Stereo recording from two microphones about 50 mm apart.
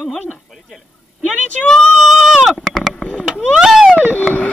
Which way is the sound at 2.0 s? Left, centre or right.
Centre.